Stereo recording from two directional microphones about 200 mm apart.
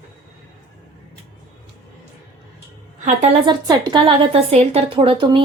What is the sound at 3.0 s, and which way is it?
Speech, 35° right (ahead or behind).